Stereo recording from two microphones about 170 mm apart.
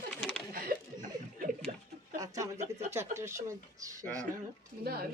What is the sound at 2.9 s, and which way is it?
Speech, 15° right (ahead or behind).